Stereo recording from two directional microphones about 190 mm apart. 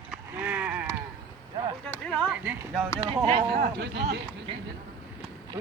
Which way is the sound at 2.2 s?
5° right (ahead or behind).